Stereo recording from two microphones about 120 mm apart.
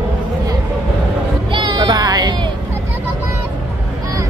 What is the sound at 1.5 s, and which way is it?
Music, 35° right (ahead or behind).